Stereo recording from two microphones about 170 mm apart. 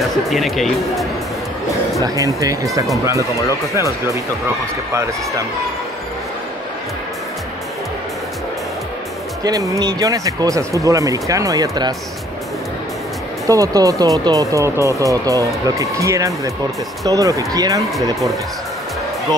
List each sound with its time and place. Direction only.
0.0 s speech: centre (ahead or behind)
2.4 s speech: 20° right (ahead or behind)
9.4 s speech: 20° right (ahead or behind)
13.5 s speech: 20° right (ahead or behind)